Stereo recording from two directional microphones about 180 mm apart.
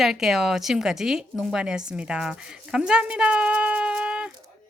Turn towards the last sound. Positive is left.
turn(degrees=-5)  # may be behind; listen again after turning